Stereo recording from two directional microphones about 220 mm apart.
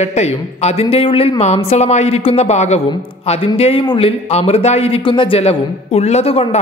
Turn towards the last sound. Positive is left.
turn(degrees=25)  # may be behind; listen again after turning